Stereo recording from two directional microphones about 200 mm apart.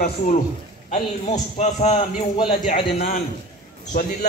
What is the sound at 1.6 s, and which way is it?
Speech, 35° left (ahead or behind).